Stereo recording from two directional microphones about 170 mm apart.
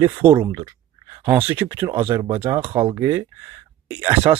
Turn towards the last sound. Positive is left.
turn(degrees=-30)  # may be behind; listen again after turning